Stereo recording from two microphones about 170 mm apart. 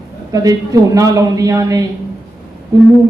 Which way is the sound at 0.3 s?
20° right (ahead or behind).